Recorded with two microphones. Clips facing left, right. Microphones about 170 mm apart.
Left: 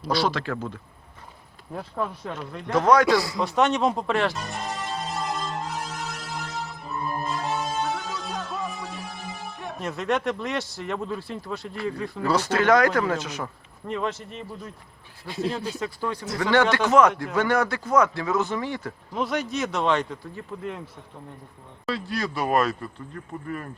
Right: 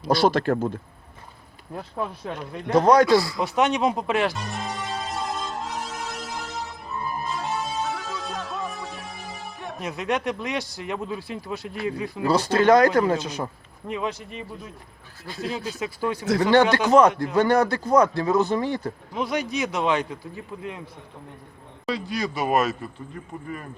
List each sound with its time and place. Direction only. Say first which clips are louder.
0.1 s speech: right 5 dB; 50° right (ahead or behind)
2.0 s speech: even; 10° right (ahead or behind)
2.7 s speech: right 2 dB; 35° right (ahead or behind)
3.3 s music: even; 5° right (ahead or behind)
11.9 s a man's voice: right 2 dB; 5° right (ahead or behind)
12.3 s speech: right 3 dB; 30° right (ahead or behind)
13.8 s a man's voice: even; 5° right (ahead or behind)
16.9 s speech: right 3 dB; 35° right (ahead or behind)
19.1 s a man's voice: even; centre (ahead or behind)
21.8 s a man's voice: right 1 dB; centre (ahead or behind)